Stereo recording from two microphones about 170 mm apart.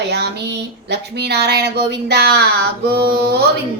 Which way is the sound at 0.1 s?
75° right (ahead or behind).